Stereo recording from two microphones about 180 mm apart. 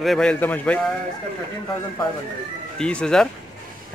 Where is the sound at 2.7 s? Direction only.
5° left (ahead or behind).